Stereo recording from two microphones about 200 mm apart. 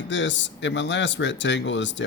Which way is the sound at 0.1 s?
65° left (ahead or behind).